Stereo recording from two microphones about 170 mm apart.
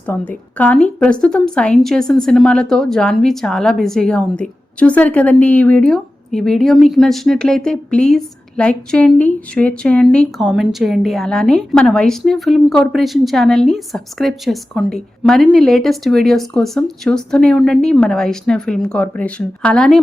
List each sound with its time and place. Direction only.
0.0 s a woman's voice: 10° left (ahead or behind)